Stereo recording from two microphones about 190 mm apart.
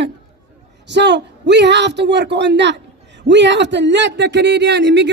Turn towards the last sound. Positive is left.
turn(degrees=-70)  # may be behind; listen again after turning